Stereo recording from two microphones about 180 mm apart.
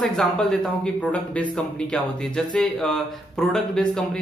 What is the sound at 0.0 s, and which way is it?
Speech, centre (ahead or behind).